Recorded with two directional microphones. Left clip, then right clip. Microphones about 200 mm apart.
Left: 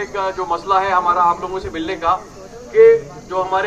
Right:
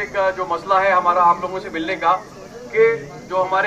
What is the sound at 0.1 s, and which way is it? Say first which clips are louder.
A man's voice: right 2 dB; 35° right (ahead or behind).